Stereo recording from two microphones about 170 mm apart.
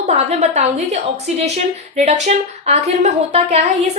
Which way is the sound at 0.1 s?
40° right (ahead or behind).